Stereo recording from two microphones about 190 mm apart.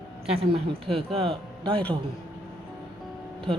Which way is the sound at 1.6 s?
5° left (ahead or behind).